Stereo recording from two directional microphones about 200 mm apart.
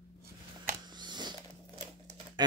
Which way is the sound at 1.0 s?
20° right (ahead or behind).